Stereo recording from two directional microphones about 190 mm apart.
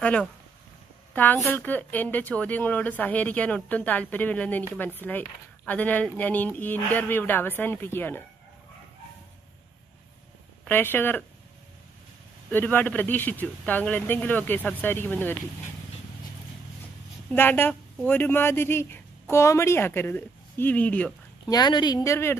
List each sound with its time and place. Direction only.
0.0 s a woman's voice: 5° left (ahead or behind)
10.6 s a woman's voice: 10° left (ahead or behind)
12.4 s a woman's voice: 10° left (ahead or behind)
17.3 s a woman's voice: 10° left (ahead or behind)
21.5 s speech: 25° left (ahead or behind)